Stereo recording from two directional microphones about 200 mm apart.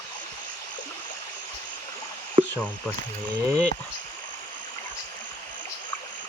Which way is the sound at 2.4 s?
25° right (ahead or behind).